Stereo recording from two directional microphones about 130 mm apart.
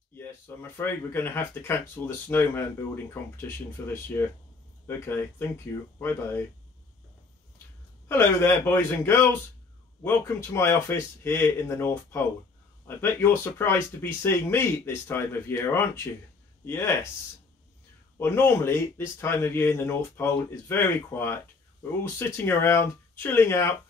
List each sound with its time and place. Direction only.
0.1 s speech: 15° left (ahead or behind)
8.1 s speech: 20° left (ahead or behind)
18.2 s speech: 15° left (ahead or behind)
22.4 s speech: 20° left (ahead or behind)